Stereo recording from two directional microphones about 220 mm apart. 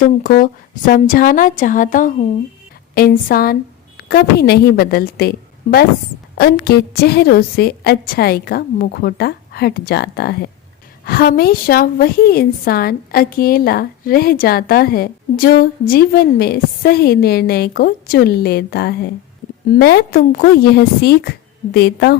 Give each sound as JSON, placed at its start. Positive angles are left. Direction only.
{"t": 0.0, "sound": "a woman's voice", "side_deg": 35}
{"t": 6.3, "sound": "a woman's voice", "side_deg": 45}